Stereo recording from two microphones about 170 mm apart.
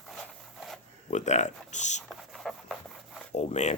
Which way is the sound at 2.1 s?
Centre (ahead or behind).